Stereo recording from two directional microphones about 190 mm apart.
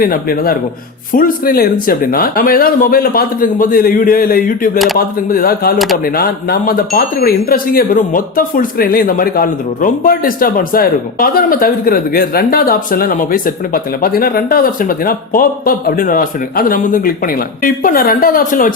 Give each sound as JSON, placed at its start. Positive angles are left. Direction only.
{"t": 0.0, "sound": "speech", "side_deg": 50}